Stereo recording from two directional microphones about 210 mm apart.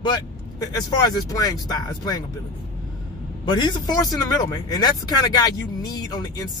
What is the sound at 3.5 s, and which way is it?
Speech, 20° left (ahead or behind).